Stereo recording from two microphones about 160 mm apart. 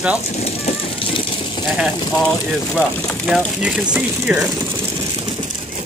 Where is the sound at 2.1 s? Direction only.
5° left (ahead or behind).